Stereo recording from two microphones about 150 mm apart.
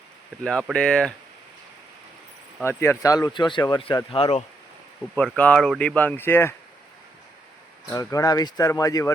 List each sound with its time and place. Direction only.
0.4 s speech: 5° left (ahead or behind)
2.6 s speech: 15° left (ahead or behind); by 4.4 s 40° left (ahead or behind)
5.4 s speech: 5° left (ahead or behind)
7.9 s speech: 20° left (ahead or behind)